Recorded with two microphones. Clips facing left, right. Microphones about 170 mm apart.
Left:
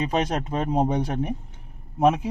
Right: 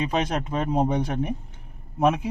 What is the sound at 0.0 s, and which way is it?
Speech, 35° left (ahead or behind).